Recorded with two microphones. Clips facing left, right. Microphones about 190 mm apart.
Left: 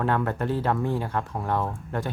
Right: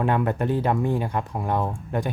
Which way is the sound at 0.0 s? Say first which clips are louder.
Right 2 dB; 15° right (ahead or behind).